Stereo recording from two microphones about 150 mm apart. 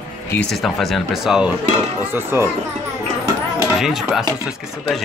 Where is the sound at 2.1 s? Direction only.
15° right (ahead or behind).